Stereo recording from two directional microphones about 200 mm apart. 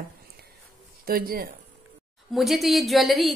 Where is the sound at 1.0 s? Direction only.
50° right (ahead or behind).